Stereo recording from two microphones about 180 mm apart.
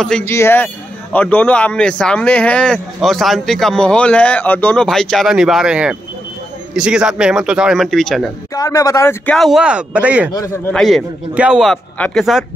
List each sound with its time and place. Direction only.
0.0 s speech: 5° left (ahead or behind)
8.5 s speech: 20° left (ahead or behind); by 10.3 s 5° right (ahead or behind)
10.3 s a man's voice: 20° left (ahead or behind)
10.7 s speech: 5° left (ahead or behind)